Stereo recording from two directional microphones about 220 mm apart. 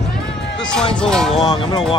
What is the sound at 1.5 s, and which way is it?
Speech, 20° left (ahead or behind).